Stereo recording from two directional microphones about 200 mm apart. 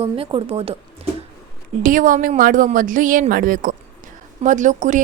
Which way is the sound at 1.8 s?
40° right (ahead or behind).